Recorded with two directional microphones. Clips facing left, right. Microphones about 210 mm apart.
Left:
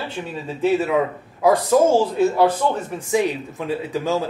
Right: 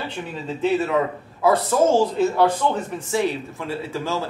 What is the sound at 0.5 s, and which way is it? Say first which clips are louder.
A man's voice: left 2 dB; 10° left (ahead or behind).